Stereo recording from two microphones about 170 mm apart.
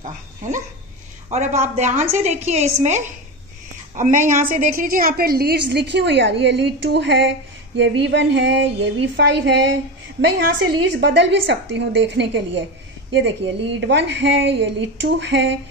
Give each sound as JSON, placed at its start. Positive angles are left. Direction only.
{"t": 0.0, "sound": "a woman's voice", "side_deg": -50}
{"t": 10.2, "sound": "a woman's voice", "side_deg": -80}